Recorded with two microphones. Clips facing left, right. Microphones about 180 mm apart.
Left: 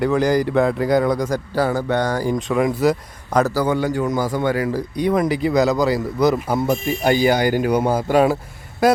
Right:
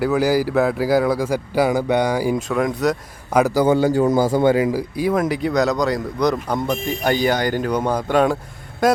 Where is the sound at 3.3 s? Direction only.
15° right (ahead or behind).